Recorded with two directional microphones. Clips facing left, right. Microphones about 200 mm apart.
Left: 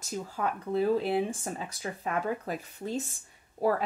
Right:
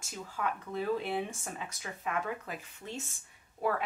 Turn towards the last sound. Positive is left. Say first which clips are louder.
# left 5 dB
turn(degrees=35)  # may be behind; listen again after turning